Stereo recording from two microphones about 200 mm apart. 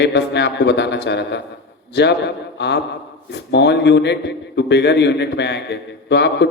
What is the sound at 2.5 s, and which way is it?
A man's voice, 60° left (ahead or behind).